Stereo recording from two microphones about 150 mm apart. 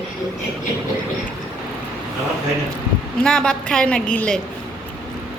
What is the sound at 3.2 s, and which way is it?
A woman's voice, 5° left (ahead or behind).